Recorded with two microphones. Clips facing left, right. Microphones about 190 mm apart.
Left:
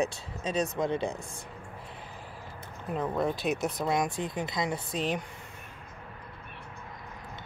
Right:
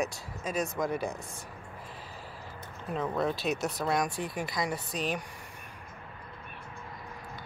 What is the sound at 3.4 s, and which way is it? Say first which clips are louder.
Speech: left 1 dB; 55° left (ahead or behind).